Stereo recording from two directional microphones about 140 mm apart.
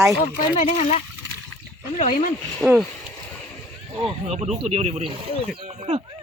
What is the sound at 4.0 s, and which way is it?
Speech, 45° right (ahead or behind).